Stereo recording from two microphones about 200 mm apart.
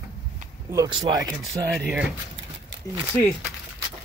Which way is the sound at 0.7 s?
20° right (ahead or behind).